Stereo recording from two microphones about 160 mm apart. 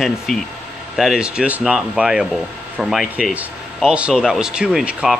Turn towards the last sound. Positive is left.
turn(degrees=-5)  # may be behind; listen again after turning